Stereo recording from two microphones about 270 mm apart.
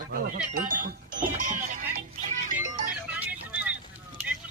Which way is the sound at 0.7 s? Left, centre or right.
Right.